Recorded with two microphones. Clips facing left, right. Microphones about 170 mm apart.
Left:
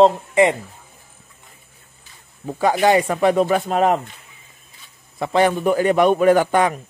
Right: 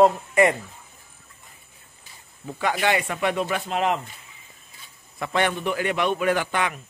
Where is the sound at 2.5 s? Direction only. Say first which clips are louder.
Left 7 dB; 40° left (ahead or behind).